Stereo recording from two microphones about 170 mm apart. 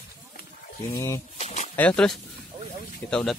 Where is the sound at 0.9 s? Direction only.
15° left (ahead or behind).